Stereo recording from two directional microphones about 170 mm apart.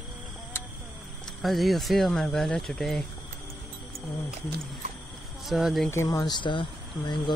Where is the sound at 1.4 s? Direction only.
Centre (ahead or behind).